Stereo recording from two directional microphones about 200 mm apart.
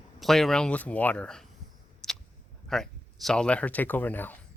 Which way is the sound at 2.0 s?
5° left (ahead or behind).